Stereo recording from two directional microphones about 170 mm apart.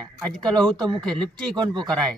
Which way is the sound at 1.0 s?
5° left (ahead or behind).